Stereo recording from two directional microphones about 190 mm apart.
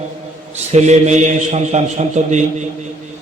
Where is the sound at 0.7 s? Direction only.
35° right (ahead or behind).